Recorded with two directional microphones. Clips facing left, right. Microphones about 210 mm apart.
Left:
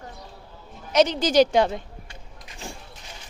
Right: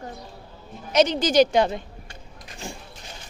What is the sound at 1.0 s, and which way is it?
Speech, 15° right (ahead or behind).